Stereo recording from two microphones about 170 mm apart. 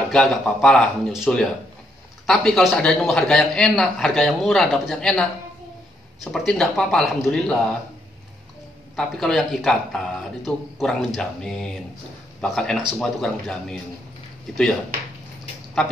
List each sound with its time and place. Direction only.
0.1 s a man's voice: 5° left (ahead or behind)
6.3 s a man's voice: 5° left (ahead or behind)
8.9 s a man's voice: centre (ahead or behind)
15.8 s a man's voice: 5° left (ahead or behind)